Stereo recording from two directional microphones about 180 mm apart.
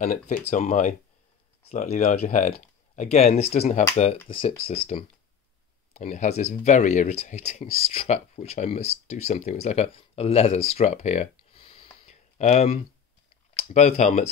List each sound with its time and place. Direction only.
0.0 s speech: 50° left (ahead or behind)